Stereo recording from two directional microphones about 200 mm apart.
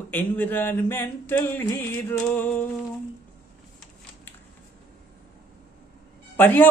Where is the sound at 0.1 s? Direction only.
10° left (ahead or behind).